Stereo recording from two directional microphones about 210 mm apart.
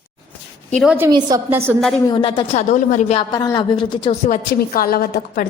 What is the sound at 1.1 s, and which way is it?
Speech, 20° right (ahead or behind).